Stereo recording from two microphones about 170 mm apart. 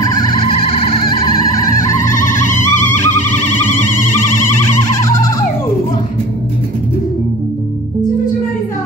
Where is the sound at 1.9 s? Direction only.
50° left (ahead or behind).